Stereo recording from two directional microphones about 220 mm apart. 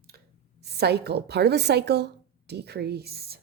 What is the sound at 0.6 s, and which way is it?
A woman's voice, 45° right (ahead or behind).